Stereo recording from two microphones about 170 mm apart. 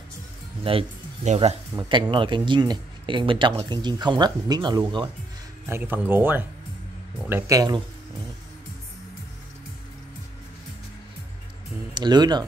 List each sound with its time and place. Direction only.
0.7 s speech: 40° right (ahead or behind)
1.8 s speech: 25° right (ahead or behind)
5.7 s speech: 10° right (ahead or behind)
11.9 s speech: 25° right (ahead or behind)